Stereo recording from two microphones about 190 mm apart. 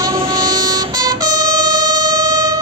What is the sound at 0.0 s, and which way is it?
Vehicle, 20° right (ahead or behind).